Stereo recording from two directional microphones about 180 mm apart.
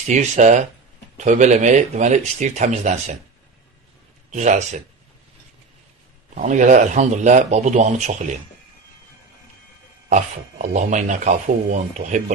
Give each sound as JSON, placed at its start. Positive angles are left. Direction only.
{"t": 0.1, "sound": "speech", "side_deg": -40}
{"t": 4.3, "sound": "speech", "side_deg": -40}
{"t": 6.3, "sound": "speech", "side_deg": -45}
{"t": 10.0, "sound": "speech", "side_deg": -40}